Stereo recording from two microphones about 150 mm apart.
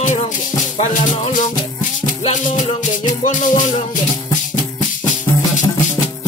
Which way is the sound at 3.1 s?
55° left (ahead or behind).